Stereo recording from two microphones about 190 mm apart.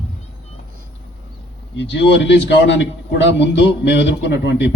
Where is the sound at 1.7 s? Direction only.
70° left (ahead or behind).